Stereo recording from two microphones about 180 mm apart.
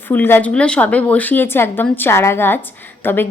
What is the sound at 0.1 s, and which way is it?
A woman's voice, 10° left (ahead or behind).